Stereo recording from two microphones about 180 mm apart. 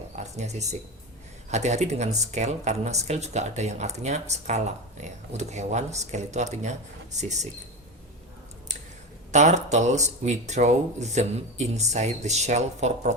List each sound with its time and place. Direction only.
0.2 s speech: 40° right (ahead or behind)
9.3 s speech: 40° right (ahead or behind)